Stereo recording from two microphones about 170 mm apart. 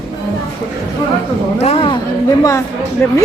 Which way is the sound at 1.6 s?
35° left (ahead or behind).